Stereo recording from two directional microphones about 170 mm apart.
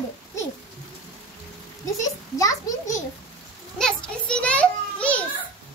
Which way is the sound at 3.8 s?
5° left (ahead or behind).